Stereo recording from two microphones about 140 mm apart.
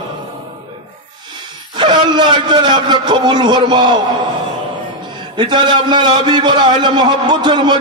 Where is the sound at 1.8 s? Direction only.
35° right (ahead or behind).